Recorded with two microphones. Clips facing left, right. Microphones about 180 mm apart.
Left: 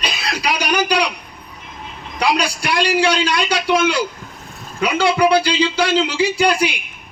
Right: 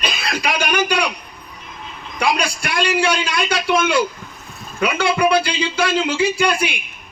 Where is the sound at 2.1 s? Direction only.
55° right (ahead or behind).